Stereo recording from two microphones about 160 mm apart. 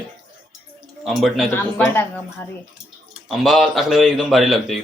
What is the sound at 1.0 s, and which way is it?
Speech, centre (ahead or behind).